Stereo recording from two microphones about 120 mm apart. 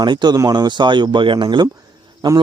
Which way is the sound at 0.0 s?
35° right (ahead or behind).